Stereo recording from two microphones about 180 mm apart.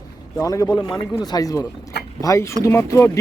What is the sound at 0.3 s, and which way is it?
A man's voice, 20° left (ahead or behind).